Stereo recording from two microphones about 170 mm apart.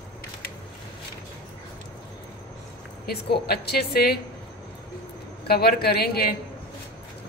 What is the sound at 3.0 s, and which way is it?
A woman's voice, 70° left (ahead or behind).